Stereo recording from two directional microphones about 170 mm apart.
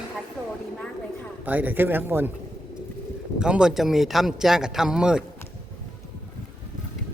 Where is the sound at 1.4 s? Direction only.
10° right (ahead or behind).